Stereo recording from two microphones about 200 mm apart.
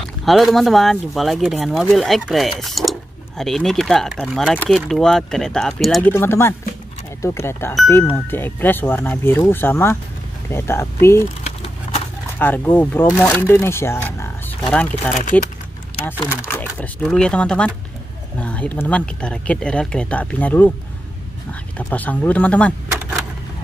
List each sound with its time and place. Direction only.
0.2 s speech: centre (ahead or behind)
6.1 s speech: 10° left (ahead or behind)
11.4 s crumpling: 30° left (ahead or behind)
12.4 s speech: 10° left (ahead or behind)
16.4 s speech: 10° left (ahead or behind)
21.7 s speech: 10° left (ahead or behind)